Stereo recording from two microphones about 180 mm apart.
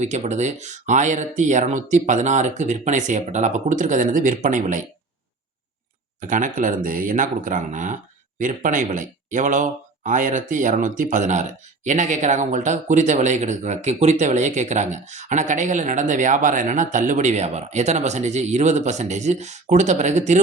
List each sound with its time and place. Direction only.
0.0 s speech: 40° right (ahead or behind)
6.1 s speech: 45° right (ahead or behind)